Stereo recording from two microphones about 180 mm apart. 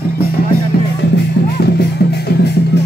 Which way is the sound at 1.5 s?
65° left (ahead or behind).